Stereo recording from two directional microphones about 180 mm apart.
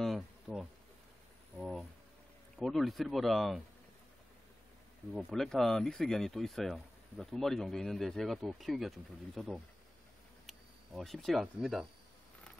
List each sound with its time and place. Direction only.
0.0 s bee: centre (ahead or behind)
1.6 s a sound: centre (ahead or behind)
2.6 s speech: centre (ahead or behind)
5.1 s speech: centre (ahead or behind)